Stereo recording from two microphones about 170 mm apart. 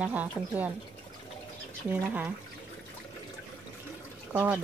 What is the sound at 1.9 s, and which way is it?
Speech, 10° right (ahead or behind).